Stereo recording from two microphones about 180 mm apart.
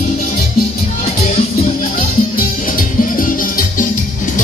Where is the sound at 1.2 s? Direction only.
45° left (ahead or behind).